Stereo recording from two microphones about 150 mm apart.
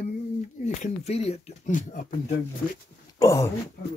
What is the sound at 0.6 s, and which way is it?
Speech, 50° left (ahead or behind).